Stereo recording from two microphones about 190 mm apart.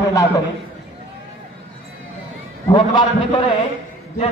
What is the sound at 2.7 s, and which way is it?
Speech, 25° left (ahead or behind).